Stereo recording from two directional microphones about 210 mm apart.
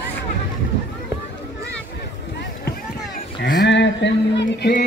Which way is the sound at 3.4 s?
55° left (ahead or behind).